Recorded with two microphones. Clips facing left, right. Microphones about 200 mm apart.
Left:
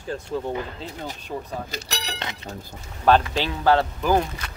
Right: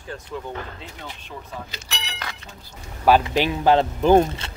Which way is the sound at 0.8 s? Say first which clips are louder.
Left 5 dB; 40° left (ahead or behind).